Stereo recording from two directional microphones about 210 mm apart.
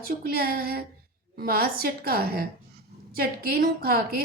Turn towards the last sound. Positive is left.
turn(degrees=-45)  # may be behind; listen again after turning